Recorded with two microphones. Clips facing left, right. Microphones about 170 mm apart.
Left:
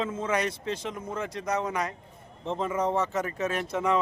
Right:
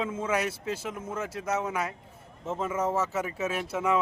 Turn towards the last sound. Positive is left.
turn(degrees=-5)  # may be behind; listen again after turning